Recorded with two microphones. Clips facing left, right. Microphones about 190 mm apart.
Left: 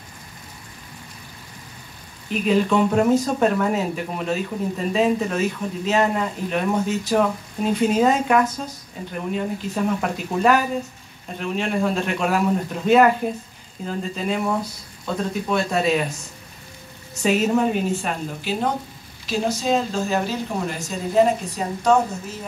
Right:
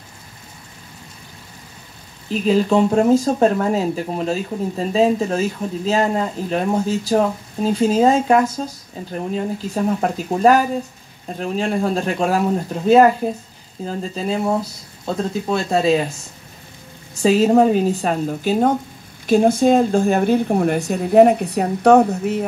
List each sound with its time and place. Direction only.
2.2 s speech: 30° right (ahead or behind)
17.2 s speech: 35° right (ahead or behind); by 22.4 s 65° right (ahead or behind)